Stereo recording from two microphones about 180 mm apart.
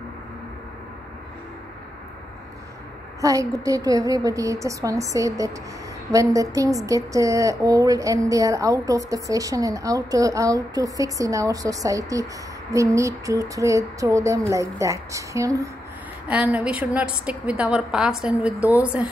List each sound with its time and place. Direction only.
3.2 s a woman's voice: 20° right (ahead or behind)